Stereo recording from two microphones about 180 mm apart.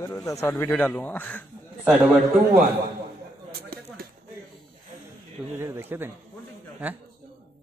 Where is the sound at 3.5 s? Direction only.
55° right (ahead or behind).